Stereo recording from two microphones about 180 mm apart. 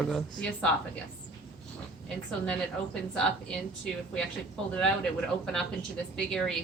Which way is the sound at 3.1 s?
5° left (ahead or behind).